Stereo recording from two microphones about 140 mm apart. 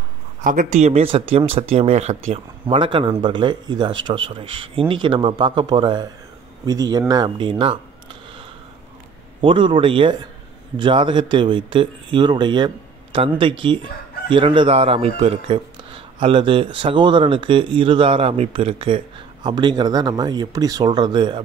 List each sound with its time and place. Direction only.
0.4 s a man's voice: 70° right (ahead or behind); by 7.8 s 35° right (ahead or behind)
9.4 s a man's voice: 35° right (ahead or behind)